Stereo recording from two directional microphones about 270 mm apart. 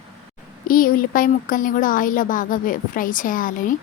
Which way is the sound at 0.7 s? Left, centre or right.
Left.